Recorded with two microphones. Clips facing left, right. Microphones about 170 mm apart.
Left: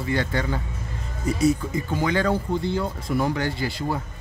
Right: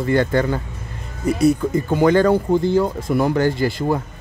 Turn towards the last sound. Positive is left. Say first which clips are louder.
# right 8 dB
turn(degrees=-50)  # may be behind; listen again after turning